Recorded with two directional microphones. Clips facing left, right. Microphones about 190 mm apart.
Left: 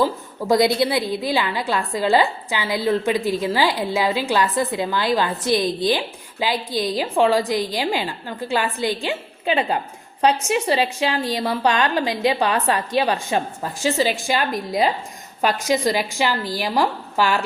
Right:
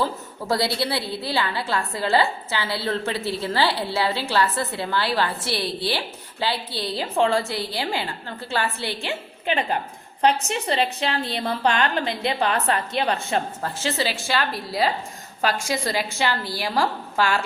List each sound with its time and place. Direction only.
0.0 s a woman's voice: 15° left (ahead or behind)
10.5 s a woman's voice: 15° left (ahead or behind)